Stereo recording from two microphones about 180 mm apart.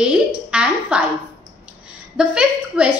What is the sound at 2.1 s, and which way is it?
Speech, 5° right (ahead or behind).